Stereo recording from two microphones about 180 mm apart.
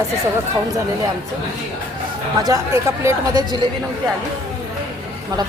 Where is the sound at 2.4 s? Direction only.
20° right (ahead or behind).